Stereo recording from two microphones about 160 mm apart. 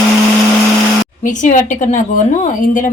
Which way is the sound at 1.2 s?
55° left (ahead or behind).